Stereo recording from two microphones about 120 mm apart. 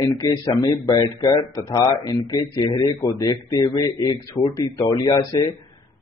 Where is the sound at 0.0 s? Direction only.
30° left (ahead or behind).